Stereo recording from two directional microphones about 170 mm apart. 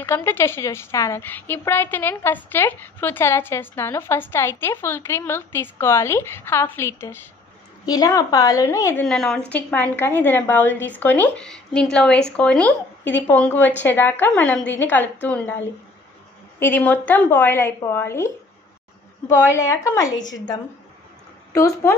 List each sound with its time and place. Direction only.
0.0 s a woman's voice: 15° left (ahead or behind)
9.0 s a woman's voice: 5° left (ahead or behind); by 20.5 s 25° left (ahead or behind)
21.5 s a woman's voice: 20° left (ahead or behind)